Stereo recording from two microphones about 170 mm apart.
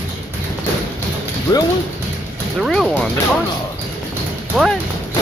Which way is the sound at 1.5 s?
20° left (ahead or behind).